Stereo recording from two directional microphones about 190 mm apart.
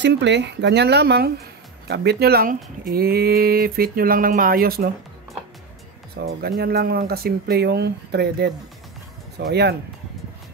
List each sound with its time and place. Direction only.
0.0 s speech: 65° right (ahead or behind)
6.1 s speech: 55° right (ahead or behind)